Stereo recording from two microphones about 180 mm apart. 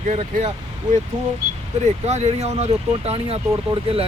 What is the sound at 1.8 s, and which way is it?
Speech, 40° right (ahead or behind).